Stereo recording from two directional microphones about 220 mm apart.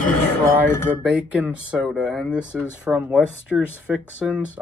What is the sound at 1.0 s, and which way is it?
Speech, 5° right (ahead or behind).